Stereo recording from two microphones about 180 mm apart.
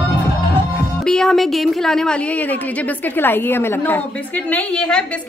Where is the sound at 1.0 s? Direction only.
5° left (ahead or behind).